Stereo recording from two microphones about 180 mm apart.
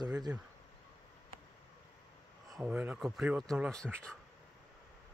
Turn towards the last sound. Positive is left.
turn(degrees=5)  # may be behind; listen again after turning